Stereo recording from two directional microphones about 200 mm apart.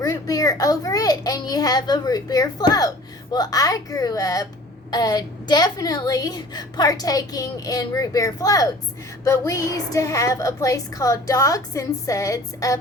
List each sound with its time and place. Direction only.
0.0 s a woman's voice: 15° left (ahead or behind)